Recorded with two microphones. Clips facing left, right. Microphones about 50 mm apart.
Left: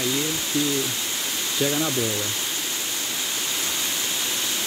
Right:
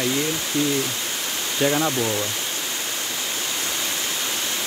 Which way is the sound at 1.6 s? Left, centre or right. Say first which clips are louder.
Right 3 dB; right.